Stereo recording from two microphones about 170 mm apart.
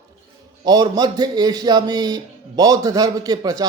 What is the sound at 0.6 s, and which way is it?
A man's voice, 25° right (ahead or behind).